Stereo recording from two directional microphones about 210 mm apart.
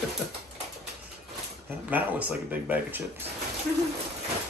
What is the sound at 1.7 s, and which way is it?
Speech, 10° right (ahead or behind).